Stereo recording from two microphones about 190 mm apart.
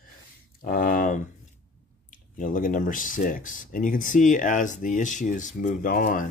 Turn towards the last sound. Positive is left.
turn(degrees=45)  # may be behind; listen again after turning